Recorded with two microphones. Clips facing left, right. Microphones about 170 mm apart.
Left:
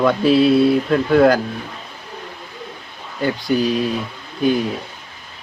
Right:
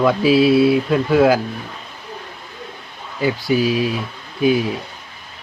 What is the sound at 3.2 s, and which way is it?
Speech, 5° right (ahead or behind).